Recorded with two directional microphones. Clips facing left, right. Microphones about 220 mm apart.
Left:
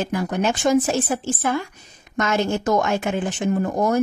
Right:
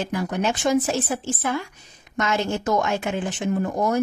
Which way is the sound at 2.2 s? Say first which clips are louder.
Left 3 dB; 45° left (ahead or behind).